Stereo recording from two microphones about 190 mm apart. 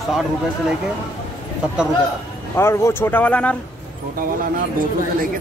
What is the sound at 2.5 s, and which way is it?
Speech, 15° left (ahead or behind).